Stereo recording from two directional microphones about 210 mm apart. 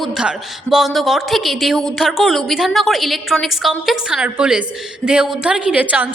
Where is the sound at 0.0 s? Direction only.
Centre (ahead or behind).